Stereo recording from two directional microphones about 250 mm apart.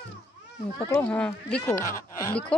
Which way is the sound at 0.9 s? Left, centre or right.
Centre.